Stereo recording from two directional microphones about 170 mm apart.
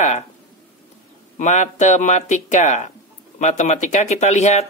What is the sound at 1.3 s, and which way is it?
Speech, 45° left (ahead or behind).